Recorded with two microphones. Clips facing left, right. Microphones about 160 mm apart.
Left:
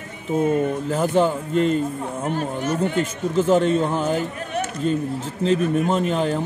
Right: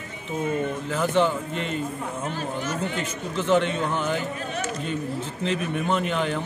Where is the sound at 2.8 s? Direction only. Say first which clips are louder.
Left 7 dB; 45° left (ahead or behind).